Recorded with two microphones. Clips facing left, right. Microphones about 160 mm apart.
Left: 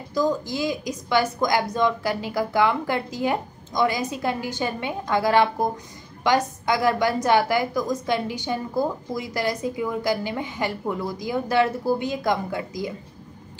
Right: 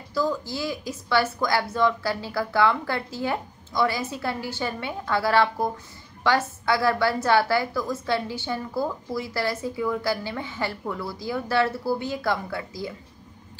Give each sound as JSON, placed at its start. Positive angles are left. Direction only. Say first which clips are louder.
{"t": 0.1, "sound": "a woman's voice", "louder": "left 3 dB", "side_deg": 15}